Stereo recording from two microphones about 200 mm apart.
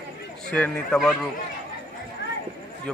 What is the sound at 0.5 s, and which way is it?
Speech, 5° left (ahead or behind).